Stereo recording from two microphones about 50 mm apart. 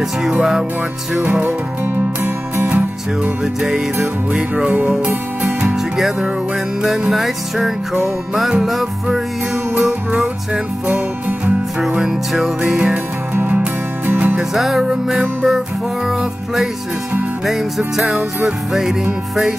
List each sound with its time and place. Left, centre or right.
0.4 s music: centre
1.2 s music: right
3.6 s music: centre
7.1 s music: centre
9.8 s music: centre
10.9 s music: right
12.0 s music: centre
13.3 s music: right
14.0 s music: right
14.3 s music: centre